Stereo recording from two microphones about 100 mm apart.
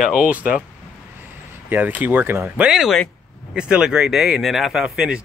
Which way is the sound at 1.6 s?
20° right (ahead or behind).